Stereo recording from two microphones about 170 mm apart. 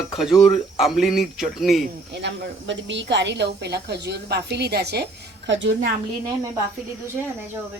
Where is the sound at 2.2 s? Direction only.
90° right; by 5.0 s 75° right (ahead or behind).